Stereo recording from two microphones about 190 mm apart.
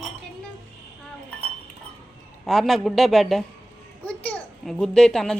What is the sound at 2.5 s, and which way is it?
A child's voice, centre (ahead or behind).